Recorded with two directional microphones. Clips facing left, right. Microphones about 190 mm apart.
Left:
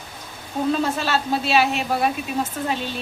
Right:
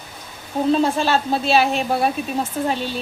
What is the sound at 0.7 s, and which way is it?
Speech, 30° right (ahead or behind).